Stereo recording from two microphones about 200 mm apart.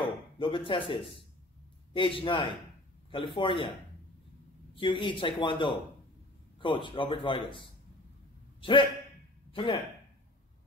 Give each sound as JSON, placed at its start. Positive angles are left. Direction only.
{"t": 0.0, "sound": "speech", "side_deg": 25}
{"t": 4.7, "sound": "speech", "side_deg": 25}